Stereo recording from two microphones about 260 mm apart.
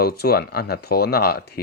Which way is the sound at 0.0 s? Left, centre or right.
Left.